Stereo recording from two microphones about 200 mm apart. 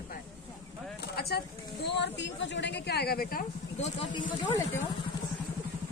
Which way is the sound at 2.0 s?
65° left (ahead or behind).